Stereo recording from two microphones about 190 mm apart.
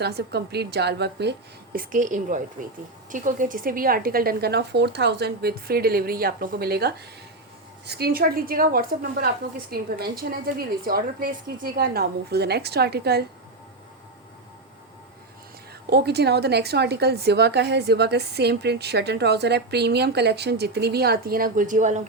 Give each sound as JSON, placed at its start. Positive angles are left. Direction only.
{"t": 0.0, "sound": "a woman's voice", "side_deg": -60}
{"t": 15.9, "sound": "a woman's voice", "side_deg": -60}